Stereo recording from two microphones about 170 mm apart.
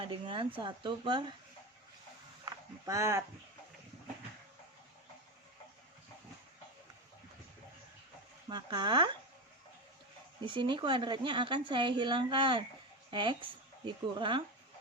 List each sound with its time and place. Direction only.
0.0 s a woman's voice: 30° right (ahead or behind)
2.4 s a sound: 20° right (ahead or behind)
8.4 s a woman's voice: 25° right (ahead or behind)
10.4 s a woman's voice: 30° right (ahead or behind)